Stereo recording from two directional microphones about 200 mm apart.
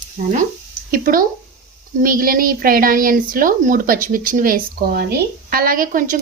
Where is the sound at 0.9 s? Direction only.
45° right (ahead or behind).